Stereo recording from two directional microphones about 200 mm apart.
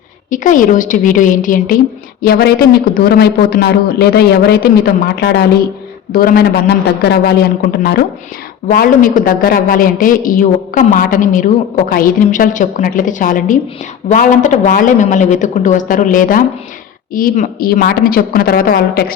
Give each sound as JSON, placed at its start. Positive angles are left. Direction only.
{"t": 0.3, "sound": "a man's voice", "side_deg": 40}